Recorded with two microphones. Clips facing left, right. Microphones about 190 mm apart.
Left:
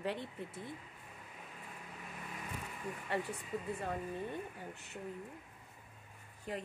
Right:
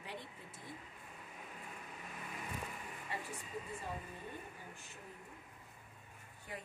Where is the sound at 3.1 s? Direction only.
65° left (ahead or behind).